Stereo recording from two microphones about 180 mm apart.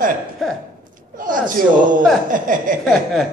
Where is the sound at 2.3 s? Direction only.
50° right (ahead or behind).